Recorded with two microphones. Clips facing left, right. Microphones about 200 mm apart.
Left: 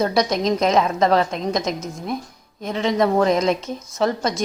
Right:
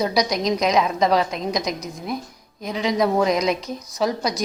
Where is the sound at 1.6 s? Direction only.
30° left (ahead or behind).